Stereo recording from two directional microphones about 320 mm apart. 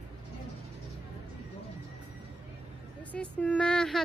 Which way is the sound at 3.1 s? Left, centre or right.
Centre.